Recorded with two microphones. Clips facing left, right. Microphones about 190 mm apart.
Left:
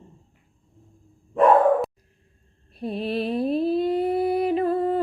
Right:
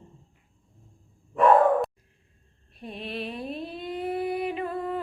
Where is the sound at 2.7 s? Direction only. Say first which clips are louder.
Left 9 dB; 35° left (ahead or behind).